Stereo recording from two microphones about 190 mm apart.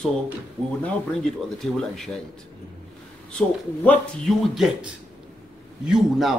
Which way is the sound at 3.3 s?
5° left (ahead or behind).